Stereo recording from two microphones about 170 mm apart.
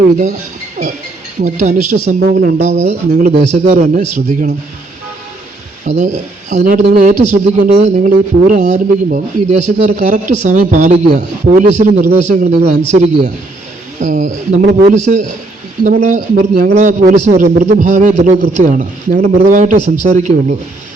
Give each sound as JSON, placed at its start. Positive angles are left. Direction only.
{"t": 1.4, "sound": "speech", "side_deg": -45}
{"t": 5.8, "sound": "speech", "side_deg": -45}